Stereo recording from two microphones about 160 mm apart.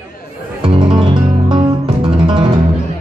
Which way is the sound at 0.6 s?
35° right (ahead or behind).